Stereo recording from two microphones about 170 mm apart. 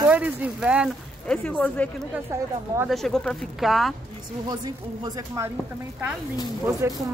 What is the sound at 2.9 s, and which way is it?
Speech, 5° left (ahead or behind).